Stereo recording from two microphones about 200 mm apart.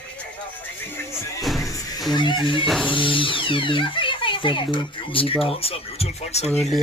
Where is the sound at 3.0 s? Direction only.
25° left (ahead or behind).